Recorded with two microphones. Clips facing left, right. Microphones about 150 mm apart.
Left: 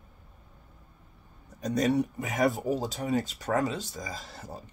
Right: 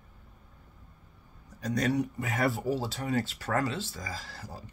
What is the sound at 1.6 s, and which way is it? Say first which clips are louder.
Speech: left 3 dB; 20° left (ahead or behind).